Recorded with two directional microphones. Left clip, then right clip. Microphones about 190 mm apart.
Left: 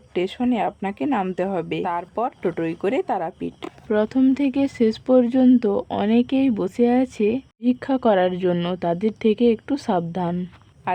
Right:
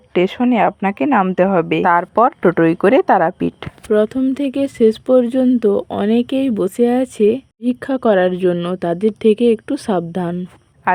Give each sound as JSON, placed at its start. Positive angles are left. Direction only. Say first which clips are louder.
{"t": 0.1, "sound": "speech", "louder": "right 8 dB", "side_deg": -25}